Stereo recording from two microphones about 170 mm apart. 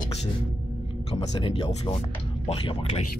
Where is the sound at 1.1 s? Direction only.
30° left (ahead or behind).